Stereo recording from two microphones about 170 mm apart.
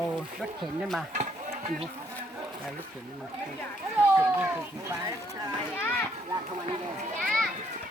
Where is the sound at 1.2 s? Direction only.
40° right (ahead or behind).